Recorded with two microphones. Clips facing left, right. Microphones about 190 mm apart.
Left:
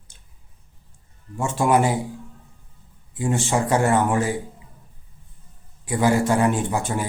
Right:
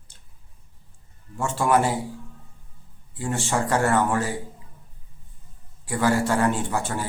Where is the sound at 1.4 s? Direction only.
15° left (ahead or behind).